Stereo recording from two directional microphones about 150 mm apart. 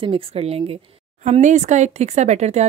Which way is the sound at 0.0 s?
40° right (ahead or behind).